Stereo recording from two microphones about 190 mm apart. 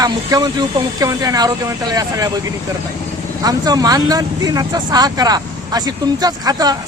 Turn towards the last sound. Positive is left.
turn(degrees=-20)  # may be behind; listen again after turning